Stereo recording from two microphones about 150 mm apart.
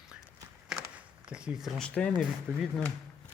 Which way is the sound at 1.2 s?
5° right (ahead or behind).